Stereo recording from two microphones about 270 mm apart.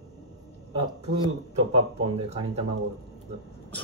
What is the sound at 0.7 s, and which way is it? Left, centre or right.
Speech, right.